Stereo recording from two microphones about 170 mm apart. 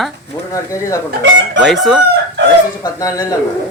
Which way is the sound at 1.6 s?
Centre (ahead or behind).